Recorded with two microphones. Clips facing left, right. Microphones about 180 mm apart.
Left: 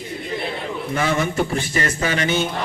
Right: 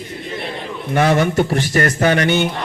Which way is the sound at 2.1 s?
70° right (ahead or behind).